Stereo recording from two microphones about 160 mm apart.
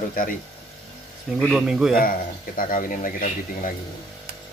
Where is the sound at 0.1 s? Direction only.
60° left (ahead or behind).